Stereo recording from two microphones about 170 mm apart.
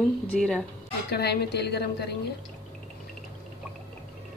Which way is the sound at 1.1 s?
70° left (ahead or behind).